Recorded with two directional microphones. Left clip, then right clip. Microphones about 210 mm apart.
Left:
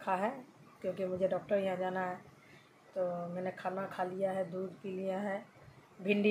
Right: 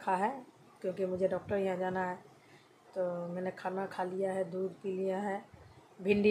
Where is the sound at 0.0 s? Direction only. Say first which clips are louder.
Right 2 dB; 15° right (ahead or behind).